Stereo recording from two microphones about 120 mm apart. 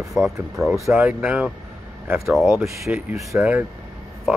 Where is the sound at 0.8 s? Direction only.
20° right (ahead or behind).